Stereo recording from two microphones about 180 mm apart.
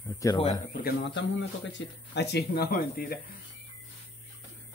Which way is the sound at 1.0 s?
80° left.